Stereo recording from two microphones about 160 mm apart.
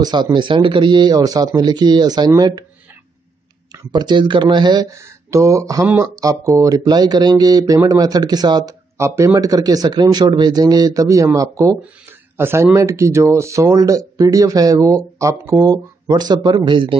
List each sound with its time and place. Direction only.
0.0 s speech: 25° right (ahead or behind)
3.9 s speech: 30° right (ahead or behind)